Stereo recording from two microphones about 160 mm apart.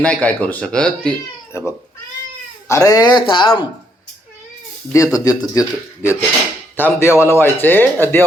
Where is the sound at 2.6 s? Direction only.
20° left (ahead or behind).